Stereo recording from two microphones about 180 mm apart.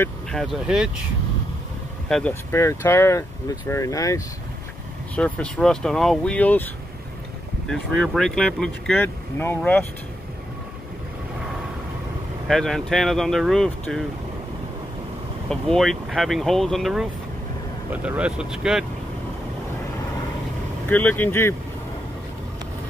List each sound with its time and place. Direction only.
0.0 s speech: centre (ahead or behind)
2.0 s speech: 5° left (ahead or behind)
2.5 s speech: 15° left (ahead or behind)
5.1 s speech: 5° left (ahead or behind)
12.4 s speech: centre (ahead or behind)
15.5 s speech: centre (ahead or behind)
20.9 s speech: 10° left (ahead or behind)